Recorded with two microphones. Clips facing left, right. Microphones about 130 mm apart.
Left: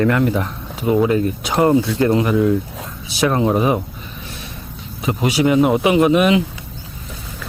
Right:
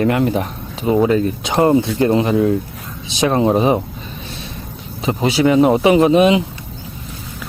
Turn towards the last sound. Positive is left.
turn(degrees=-25)  # may be behind; listen again after turning